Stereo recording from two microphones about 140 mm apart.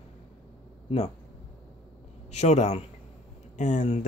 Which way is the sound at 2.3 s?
55° left (ahead or behind).